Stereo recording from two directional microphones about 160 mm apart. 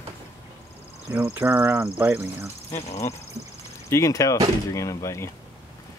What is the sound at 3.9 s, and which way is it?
Speech, 20° left (ahead or behind).